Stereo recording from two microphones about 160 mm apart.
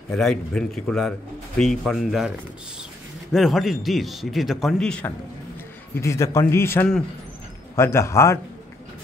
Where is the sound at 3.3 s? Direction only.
Centre (ahead or behind).